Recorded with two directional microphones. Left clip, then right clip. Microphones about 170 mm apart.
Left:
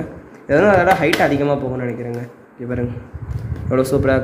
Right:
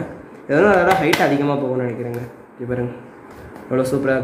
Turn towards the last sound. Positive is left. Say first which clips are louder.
# left 2 dB
turn(degrees=45)  # may be behind; listen again after turning